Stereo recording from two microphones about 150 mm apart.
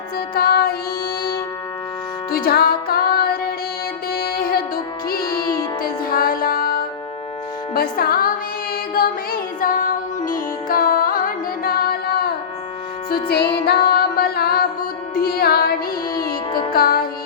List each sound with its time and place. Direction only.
0.3 s music: 90° left
2.3 s music: 85° left
5.2 s music: 25° left (ahead or behind)
5.8 s music: 75° left (ahead or behind)
7.7 s speech: 85° left
9.0 s music: 70° left (ahead or behind); by 15.7 s 90° left
16.7 s music: 85° left